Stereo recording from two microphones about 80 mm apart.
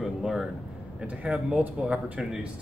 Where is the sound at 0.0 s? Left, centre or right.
Centre.